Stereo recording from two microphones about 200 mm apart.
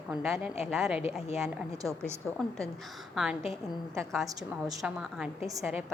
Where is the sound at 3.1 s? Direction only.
Centre (ahead or behind).